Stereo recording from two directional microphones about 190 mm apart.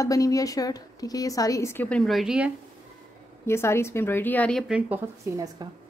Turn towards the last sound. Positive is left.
turn(degrees=-15)  # may be behind; listen again after turning